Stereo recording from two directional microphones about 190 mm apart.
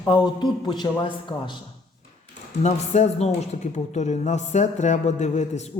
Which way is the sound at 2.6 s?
40° left (ahead or behind).